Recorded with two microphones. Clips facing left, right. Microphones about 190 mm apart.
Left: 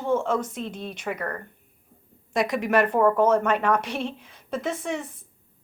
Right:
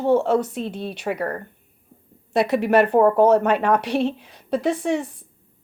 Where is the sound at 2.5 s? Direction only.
30° right (ahead or behind).